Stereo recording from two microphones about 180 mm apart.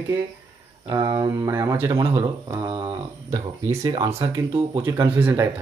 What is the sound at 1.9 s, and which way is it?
Speech, 30° right (ahead or behind).